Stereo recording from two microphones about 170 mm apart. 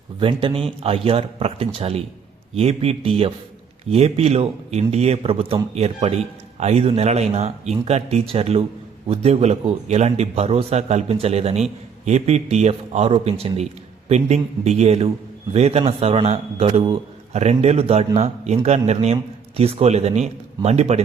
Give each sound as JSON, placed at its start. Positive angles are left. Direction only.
{"t": 0.2, "sound": "a man's voice", "side_deg": -30}